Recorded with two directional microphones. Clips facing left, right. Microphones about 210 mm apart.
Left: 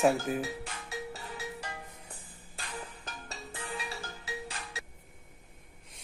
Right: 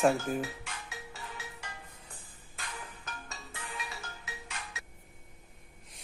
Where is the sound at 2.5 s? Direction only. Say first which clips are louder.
Left 3 dB; 35° left (ahead or behind).